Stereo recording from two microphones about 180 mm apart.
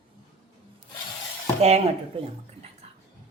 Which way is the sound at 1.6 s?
35° right (ahead or behind).